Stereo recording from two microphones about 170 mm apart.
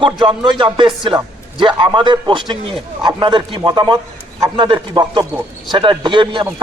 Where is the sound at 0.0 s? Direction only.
30° right (ahead or behind).